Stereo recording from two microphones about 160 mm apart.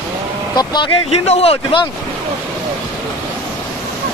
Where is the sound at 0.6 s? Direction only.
25° left (ahead or behind).